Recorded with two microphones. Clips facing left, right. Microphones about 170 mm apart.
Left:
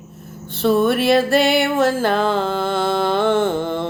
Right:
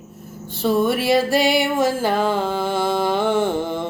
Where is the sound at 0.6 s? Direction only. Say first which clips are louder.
Left 3 dB; 10° right (ahead or behind).